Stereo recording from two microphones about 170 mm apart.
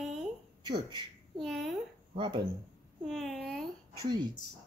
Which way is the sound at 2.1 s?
30° right (ahead or behind).